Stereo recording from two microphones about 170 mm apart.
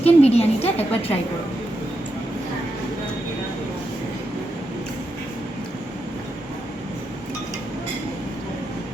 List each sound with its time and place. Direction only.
0.0 s a woman's voice: 35° left (ahead or behind)